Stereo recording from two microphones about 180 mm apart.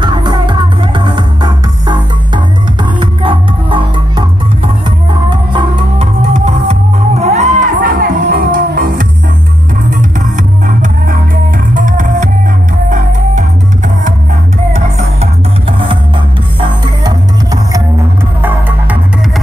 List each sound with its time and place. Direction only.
0.0 s music: 25° right (ahead or behind); by 12.3 s 45° right (ahead or behind)
16.5 s music: 25° right (ahead or behind)